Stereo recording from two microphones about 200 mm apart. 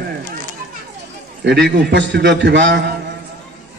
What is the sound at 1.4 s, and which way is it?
A man's voice, 60° right (ahead or behind).